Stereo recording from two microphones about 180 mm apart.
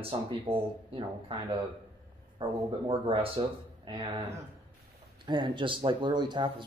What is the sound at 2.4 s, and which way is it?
Speech, 30° right (ahead or behind).